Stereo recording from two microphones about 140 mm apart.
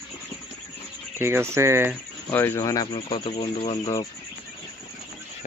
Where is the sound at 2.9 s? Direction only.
40° left (ahead or behind).